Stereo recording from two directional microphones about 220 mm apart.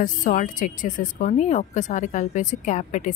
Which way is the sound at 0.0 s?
35° left (ahead or behind).